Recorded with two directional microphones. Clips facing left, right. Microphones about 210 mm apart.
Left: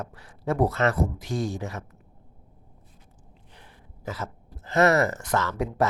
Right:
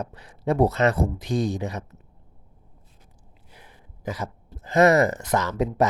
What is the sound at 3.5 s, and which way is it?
Throat clearing, 15° right (ahead or behind).